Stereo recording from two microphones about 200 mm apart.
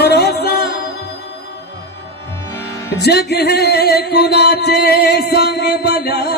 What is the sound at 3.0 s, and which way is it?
Music, 55° left (ahead or behind).